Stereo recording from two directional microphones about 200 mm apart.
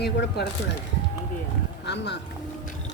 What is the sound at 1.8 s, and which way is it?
Speech, 60° left (ahead or behind).